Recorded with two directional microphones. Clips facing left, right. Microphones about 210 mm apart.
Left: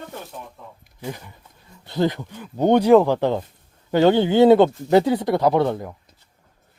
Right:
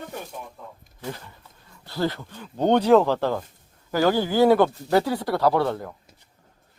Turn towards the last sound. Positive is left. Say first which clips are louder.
# left 3 dB
turn(degrees=15)  # may be behind; listen again after turning